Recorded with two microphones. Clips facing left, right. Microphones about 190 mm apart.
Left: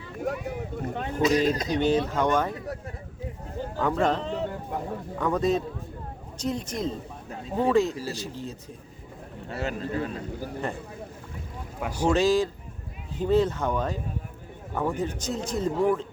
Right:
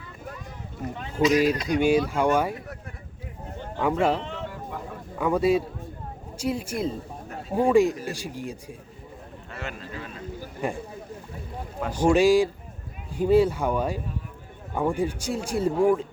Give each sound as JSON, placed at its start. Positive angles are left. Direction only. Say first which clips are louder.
{"t": 0.2, "sound": "speech", "louder": "left 11 dB", "side_deg": 70}
{"t": 1.7, "sound": "speech", "louder": "right 2 dB", "side_deg": -10}
{"t": 3.8, "sound": "speech", "louder": "right 2 dB", "side_deg": -10}
{"t": 4.2, "sound": "a sound", "louder": "left 4 dB", "side_deg": 35}
{"t": 5.1, "sound": "speech", "louder": "right 3 dB", "side_deg": -10}
{"t": 9.5, "sound": "speech", "louder": "left 7 dB", "side_deg": 35}
{"t": 10.6, "sound": "speech", "louder": "right 5 dB", "side_deg": -10}
{"t": 11.8, "sound": "speech", "louder": "right 2 dB", "side_deg": 10}
{"t": 12.0, "sound": "speech", "louder": "right 4 dB", "side_deg": -10}